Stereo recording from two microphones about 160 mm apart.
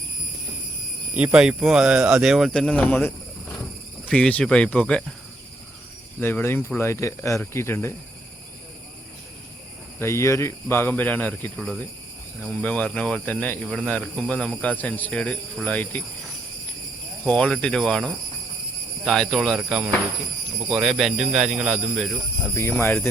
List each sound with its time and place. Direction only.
1.1 s speech: 5° right (ahead or behind); by 3.1 s 10° left (ahead or behind)
4.1 s speech: 10° left (ahead or behind)
6.1 s speech: 15° left (ahead or behind)
10.0 s speech: 15° left (ahead or behind)
17.2 s speech: 5° left (ahead or behind)
22.5 s speech: 15° left (ahead or behind)